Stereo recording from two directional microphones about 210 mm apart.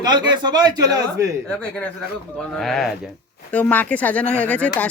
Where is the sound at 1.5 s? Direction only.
5° left (ahead or behind).